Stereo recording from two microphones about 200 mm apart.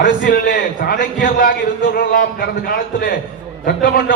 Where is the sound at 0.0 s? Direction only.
45° left (ahead or behind).